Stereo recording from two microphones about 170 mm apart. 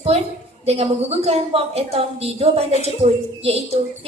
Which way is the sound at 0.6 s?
40° right (ahead or behind).